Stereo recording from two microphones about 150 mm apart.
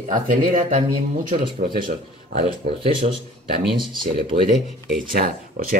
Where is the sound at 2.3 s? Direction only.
90° right.